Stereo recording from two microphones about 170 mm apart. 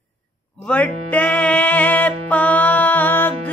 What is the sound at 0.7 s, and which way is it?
Music, 10° left (ahead or behind).